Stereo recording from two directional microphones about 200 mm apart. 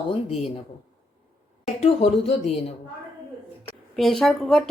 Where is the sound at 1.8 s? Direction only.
30° left (ahead or behind).